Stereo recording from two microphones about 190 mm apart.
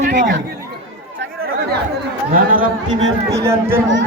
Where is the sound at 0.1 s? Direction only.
65° right (ahead or behind).